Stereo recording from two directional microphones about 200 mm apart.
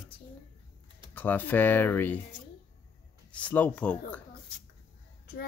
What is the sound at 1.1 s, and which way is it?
Speech, 10° left (ahead or behind).